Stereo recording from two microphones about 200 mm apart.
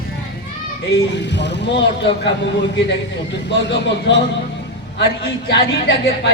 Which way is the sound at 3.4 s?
60° left (ahead or behind).